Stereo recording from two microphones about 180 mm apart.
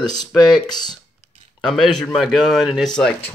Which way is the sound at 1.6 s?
Centre (ahead or behind).